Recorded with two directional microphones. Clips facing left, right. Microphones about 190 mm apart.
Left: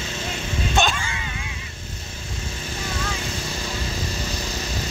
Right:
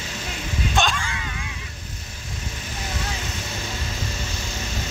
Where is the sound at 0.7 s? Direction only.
Centre (ahead or behind).